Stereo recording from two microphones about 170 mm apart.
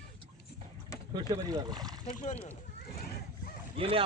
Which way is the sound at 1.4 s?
20° right (ahead or behind).